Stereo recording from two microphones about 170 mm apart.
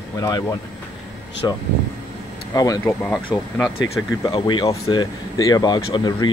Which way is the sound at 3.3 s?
5° left (ahead or behind).